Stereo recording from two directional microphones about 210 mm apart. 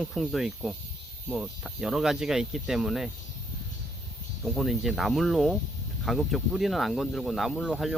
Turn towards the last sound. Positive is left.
turn(degrees=0)  # may be behind; listen again after turning